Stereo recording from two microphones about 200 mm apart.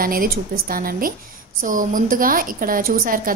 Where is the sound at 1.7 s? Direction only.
40° right (ahead or behind).